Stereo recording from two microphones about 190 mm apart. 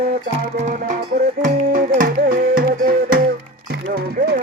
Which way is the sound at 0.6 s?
40° right (ahead or behind).